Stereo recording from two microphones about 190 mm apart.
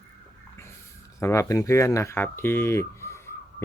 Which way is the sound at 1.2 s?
15° left (ahead or behind).